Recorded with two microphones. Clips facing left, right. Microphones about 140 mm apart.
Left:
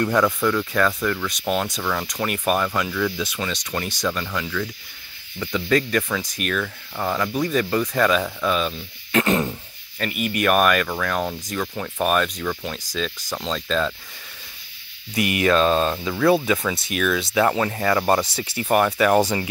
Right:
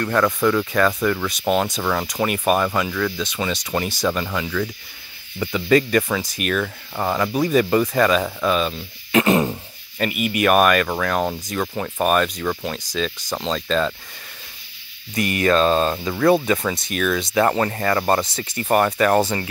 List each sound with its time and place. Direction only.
0.0 s speech: 15° left (ahead or behind)
0.4 s speech: 5° right (ahead or behind)
6.6 s speech: 15° right (ahead or behind)
15.1 s speech: 10° left (ahead or behind)
16.0 s speech: 15° right (ahead or behind)
16.3 s speech: centre (ahead or behind)